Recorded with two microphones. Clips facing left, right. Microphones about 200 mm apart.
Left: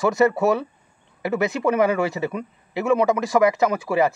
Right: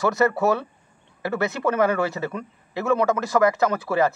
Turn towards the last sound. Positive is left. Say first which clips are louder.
# left 1 dB
turn(degrees=15)  # may be behind; listen again after turning